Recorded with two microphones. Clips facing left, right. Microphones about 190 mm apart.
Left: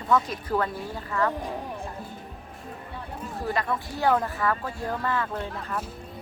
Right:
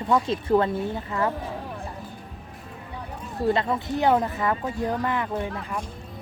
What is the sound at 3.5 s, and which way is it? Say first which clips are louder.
A woman's voice: right 5 dB; 25° right (ahead or behind).